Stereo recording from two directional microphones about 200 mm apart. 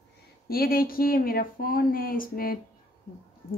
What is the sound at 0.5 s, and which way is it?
Speech, 50° left (ahead or behind).